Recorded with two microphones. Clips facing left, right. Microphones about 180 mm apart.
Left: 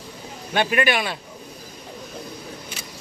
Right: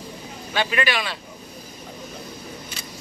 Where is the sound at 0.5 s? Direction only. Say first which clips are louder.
Left 3 dB; 50° left (ahead or behind).